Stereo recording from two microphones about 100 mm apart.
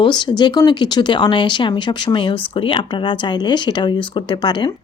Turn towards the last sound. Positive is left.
turn(degrees=50)  # may be behind; listen again after turning